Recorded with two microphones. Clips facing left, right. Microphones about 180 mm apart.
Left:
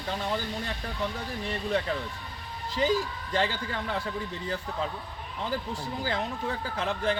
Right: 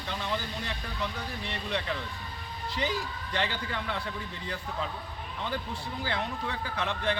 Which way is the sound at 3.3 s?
40° left (ahead or behind).